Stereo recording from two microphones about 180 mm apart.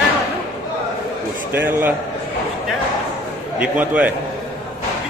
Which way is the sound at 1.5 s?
10° right (ahead or behind).